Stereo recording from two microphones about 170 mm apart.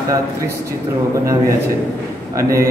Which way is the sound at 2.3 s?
15° right (ahead or behind).